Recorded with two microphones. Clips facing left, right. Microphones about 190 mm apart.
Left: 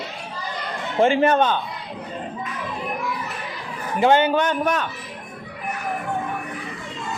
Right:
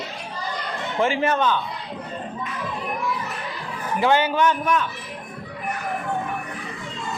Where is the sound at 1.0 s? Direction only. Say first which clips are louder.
Left 5 dB; 30° left (ahead or behind).